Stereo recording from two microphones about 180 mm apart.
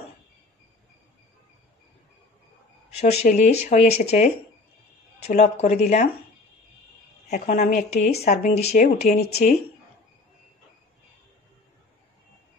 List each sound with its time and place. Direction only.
2.9 s speech: 35° left (ahead or behind)
7.2 s speech: 40° left (ahead or behind)